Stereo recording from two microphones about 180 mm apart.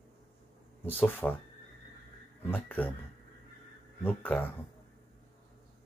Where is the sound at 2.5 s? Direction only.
10° left (ahead or behind).